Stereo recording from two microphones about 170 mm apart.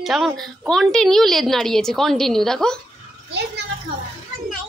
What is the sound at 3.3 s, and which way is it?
Speech, 80° right.